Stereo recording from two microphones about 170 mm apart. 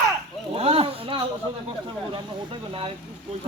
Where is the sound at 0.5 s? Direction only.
35° right (ahead or behind).